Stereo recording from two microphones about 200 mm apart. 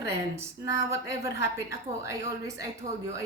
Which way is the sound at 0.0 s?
15° right (ahead or behind).